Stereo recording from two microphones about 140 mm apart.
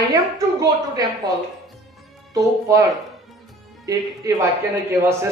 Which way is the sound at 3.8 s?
25° right (ahead or behind).